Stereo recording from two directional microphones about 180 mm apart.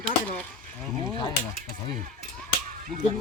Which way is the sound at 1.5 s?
55° right (ahead or behind).